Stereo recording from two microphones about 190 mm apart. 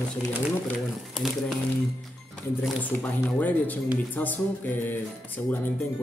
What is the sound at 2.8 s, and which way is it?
Speech, 10° left (ahead or behind).